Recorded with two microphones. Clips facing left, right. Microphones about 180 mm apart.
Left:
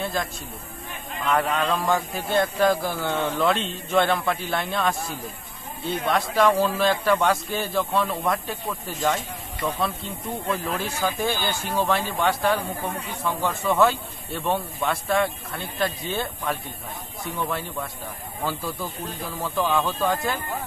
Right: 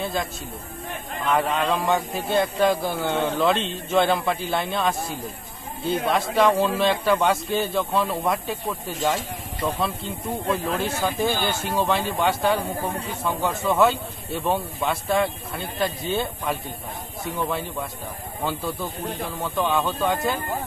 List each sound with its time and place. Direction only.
0.0 s a man's voice: centre (ahead or behind)
1.3 s speech: centre (ahead or behind)
12.5 s a man's voice: 30° right (ahead or behind)
13.2 s speech: centre (ahead or behind)